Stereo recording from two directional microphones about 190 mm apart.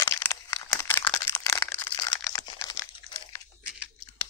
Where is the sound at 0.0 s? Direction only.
15° left (ahead or behind).